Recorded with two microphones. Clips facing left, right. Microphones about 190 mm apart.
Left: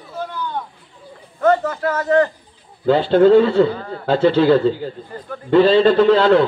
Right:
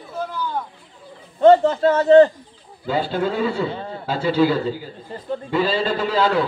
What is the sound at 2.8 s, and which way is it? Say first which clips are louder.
A man's voice: left 10 dB; 10° right (ahead or behind).